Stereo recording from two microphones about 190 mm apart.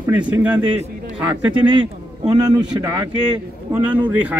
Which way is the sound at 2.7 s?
20° right (ahead or behind).